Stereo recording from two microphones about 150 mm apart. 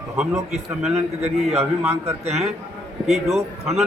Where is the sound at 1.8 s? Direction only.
15° right (ahead or behind).